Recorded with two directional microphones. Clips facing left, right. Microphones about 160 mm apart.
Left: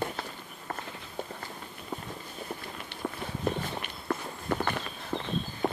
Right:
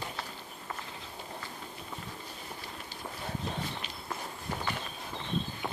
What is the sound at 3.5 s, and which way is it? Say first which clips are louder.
Walk: left 5 dB; 55° left (ahead or behind).